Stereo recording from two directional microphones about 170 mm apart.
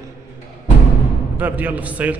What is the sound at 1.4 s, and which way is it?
Speech, 10° right (ahead or behind).